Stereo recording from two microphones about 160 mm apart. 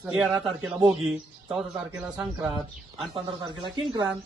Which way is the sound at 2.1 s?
25° right (ahead or behind).